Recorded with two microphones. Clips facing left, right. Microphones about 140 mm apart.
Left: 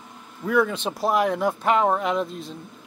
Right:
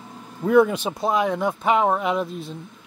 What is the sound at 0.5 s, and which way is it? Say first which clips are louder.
Speech: right 5 dB; 25° right (ahead or behind).